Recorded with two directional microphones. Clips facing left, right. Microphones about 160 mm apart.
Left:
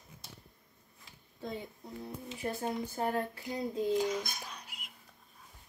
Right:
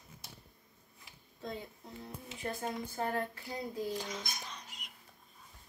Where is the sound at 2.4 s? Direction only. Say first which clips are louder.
Left 3 dB; 15° left (ahead or behind).